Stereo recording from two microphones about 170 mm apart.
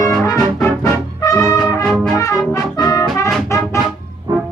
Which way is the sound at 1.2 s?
20° left (ahead or behind).